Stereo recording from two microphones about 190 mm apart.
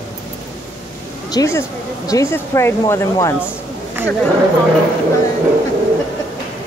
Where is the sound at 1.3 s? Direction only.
15° left (ahead or behind).